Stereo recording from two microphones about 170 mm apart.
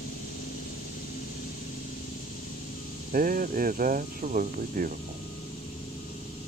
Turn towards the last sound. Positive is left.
turn(degrees=-55)  # may be behind; listen again after turning